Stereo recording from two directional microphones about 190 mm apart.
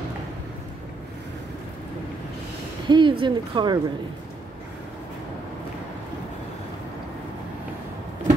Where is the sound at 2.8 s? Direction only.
25° right (ahead or behind).